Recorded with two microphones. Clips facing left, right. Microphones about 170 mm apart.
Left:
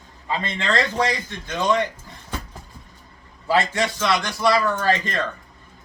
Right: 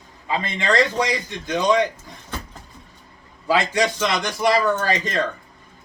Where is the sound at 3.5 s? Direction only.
15° right (ahead or behind).